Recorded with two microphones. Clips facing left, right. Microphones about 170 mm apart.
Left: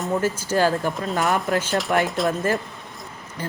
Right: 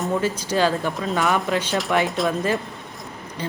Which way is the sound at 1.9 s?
10° left (ahead or behind).